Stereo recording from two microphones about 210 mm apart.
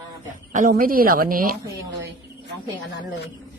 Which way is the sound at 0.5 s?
40° right (ahead or behind).